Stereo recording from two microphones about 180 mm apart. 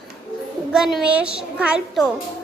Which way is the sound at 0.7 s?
Centre (ahead or behind).